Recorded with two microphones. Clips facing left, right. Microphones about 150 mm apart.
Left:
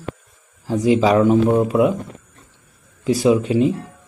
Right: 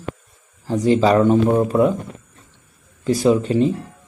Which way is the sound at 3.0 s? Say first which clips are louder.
Even; 5° left (ahead or behind).